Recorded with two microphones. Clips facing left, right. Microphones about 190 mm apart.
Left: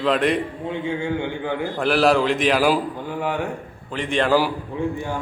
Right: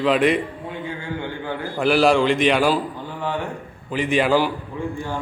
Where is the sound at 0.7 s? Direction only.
20° left (ahead or behind).